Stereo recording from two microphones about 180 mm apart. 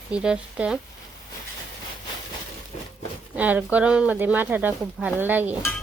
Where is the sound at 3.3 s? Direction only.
10° right (ahead or behind).